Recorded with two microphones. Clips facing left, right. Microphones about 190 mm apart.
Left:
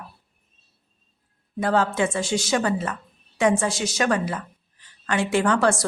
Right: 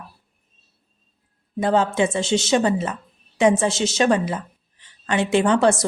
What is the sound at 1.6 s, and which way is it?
A woman's voice, 20° right (ahead or behind).